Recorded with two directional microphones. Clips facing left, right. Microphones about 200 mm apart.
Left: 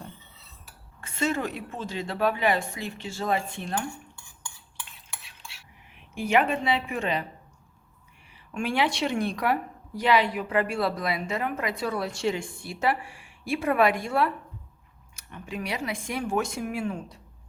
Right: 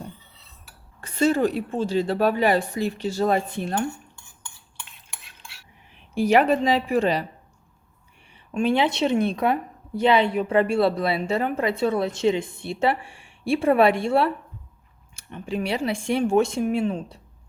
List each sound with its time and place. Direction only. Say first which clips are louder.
1.0 s a woman's voice: right 8 dB; 35° right (ahead or behind)
5.9 s a woman's voice: right 5 dB; 35° right (ahead or behind)
8.5 s a woman's voice: right 5 dB; 25° right (ahead or behind)